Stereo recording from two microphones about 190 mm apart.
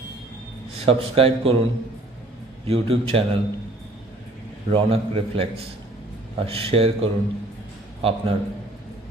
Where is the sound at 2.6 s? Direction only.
30° right (ahead or behind).